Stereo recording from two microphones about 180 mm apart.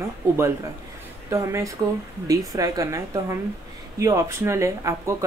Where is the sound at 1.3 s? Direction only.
15° right (ahead or behind).